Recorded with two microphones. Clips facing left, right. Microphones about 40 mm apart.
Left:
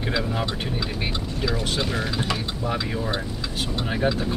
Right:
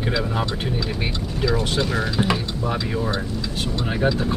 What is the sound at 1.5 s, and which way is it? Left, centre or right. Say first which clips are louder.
Speech: right 4 dB; centre.